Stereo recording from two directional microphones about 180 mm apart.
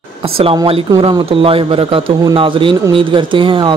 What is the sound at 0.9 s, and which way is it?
Speech, 30° right (ahead or behind).